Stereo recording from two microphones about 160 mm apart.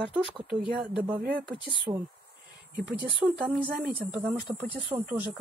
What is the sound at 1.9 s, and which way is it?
Speech, 15° right (ahead or behind).